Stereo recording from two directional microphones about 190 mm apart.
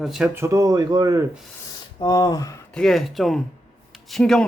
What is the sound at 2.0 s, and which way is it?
Speech, 20° left (ahead or behind).